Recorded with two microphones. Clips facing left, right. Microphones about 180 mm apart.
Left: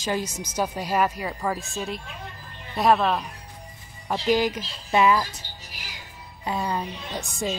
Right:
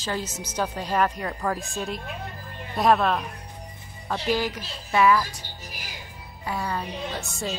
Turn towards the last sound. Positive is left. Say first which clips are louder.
# left 2 dB
turn(degrees=15)  # may be behind; listen again after turning